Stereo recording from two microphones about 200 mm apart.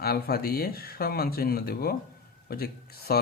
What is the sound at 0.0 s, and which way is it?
Speech, 50° left (ahead or behind).